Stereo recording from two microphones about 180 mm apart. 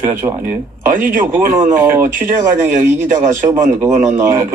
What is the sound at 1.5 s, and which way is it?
Speech, 20° right (ahead or behind).